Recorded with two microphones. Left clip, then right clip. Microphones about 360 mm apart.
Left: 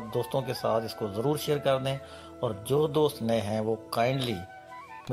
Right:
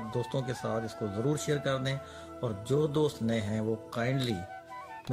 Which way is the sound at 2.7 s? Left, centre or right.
Left.